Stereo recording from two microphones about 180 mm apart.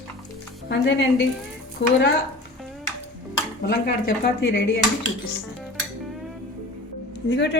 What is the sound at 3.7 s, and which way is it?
Speech, 60° left (ahead or behind).